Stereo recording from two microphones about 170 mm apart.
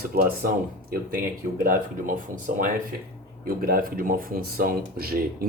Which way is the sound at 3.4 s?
60° right (ahead or behind).